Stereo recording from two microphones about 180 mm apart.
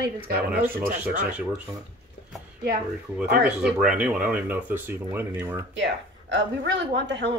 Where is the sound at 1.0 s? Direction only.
5° right (ahead or behind).